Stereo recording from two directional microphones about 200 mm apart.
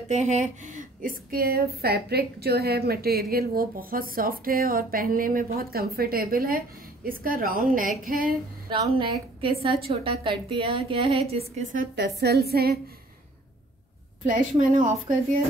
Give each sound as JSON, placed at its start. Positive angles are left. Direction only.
{"t": 0.1, "sound": "a woman's voice", "side_deg": -35}
{"t": 8.6, "sound": "a woman's voice", "side_deg": -25}
{"t": 11.7, "sound": "a woman's voice", "side_deg": -55}
{"t": 14.2, "sound": "a woman's voice", "side_deg": -45}